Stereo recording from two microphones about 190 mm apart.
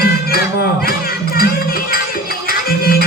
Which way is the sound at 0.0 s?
50° left (ahead or behind).